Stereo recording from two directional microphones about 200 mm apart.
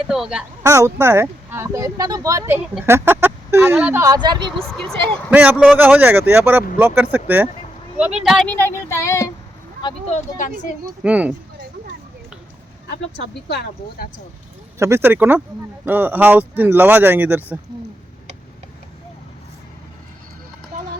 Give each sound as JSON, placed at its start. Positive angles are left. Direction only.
{"t": 0.1, "sound": "speech", "side_deg": -5}
{"t": 0.6, "sound": "speech", "side_deg": -15}
{"t": 4.5, "sound": "speech", "side_deg": 0}
{"t": 11.0, "sound": "speech", "side_deg": -5}
{"t": 13.5, "sound": "speech", "side_deg": 55}
{"t": 14.8, "sound": "speech", "side_deg": -15}